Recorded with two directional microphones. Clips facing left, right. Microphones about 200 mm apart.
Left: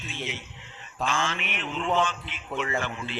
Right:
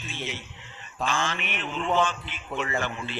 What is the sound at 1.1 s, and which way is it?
Mantra, 45° right (ahead or behind).